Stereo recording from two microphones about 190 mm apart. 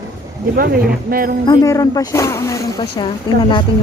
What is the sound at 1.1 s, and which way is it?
Speech, 50° right (ahead or behind).